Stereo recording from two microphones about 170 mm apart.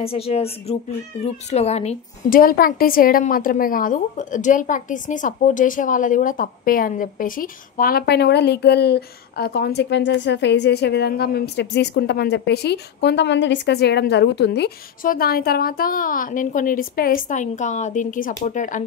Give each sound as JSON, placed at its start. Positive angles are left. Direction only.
{"t": 0.0, "sound": "a woman's voice", "side_deg": 35}
{"t": 2.2, "sound": "a woman's voice", "side_deg": 55}
{"t": 15.0, "sound": "a woman's voice", "side_deg": 60}